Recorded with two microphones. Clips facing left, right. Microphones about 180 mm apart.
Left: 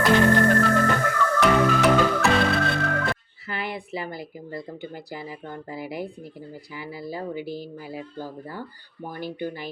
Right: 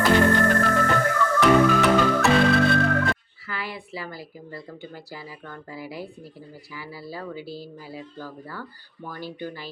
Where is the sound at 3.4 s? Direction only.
20° left (ahead or behind).